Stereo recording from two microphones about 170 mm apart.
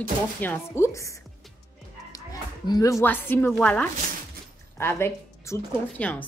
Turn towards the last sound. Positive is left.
turn(degrees=10)  # may be behind; listen again after turning